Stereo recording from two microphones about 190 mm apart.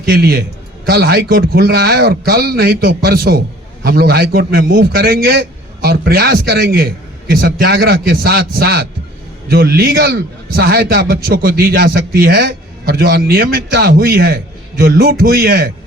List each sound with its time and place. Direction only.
0.1 s a man's voice: 55° right (ahead or behind)